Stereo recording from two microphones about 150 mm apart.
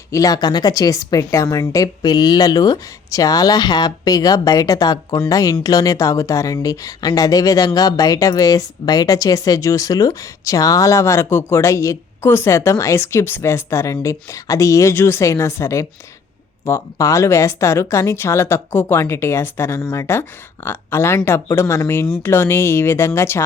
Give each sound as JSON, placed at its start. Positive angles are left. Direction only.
{"t": 0.1, "sound": "speech", "side_deg": 20}